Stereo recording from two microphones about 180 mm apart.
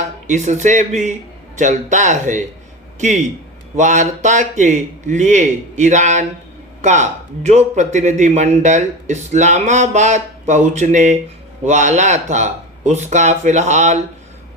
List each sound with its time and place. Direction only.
0.3 s speech: 40° right (ahead or behind)